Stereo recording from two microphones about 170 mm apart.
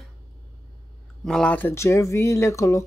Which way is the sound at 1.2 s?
5° left (ahead or behind).